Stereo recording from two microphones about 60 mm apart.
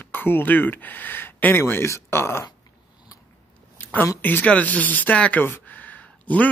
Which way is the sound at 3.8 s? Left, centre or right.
Left.